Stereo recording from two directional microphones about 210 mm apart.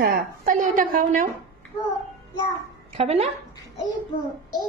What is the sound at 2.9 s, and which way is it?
Speech, 30° right (ahead or behind).